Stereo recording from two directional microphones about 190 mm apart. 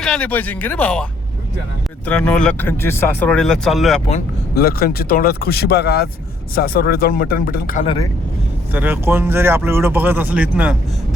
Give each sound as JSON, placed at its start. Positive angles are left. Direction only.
{"t": 0.0, "sound": "speech", "side_deg": 5}
{"t": 2.0, "sound": "speech", "side_deg": 5}
{"t": 4.5, "sound": "speech", "side_deg": 50}
{"t": 8.7, "sound": "speech", "side_deg": -10}